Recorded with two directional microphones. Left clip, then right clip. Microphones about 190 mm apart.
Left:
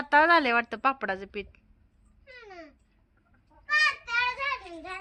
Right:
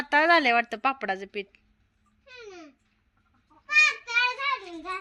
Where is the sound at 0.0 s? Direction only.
20° left (ahead or behind).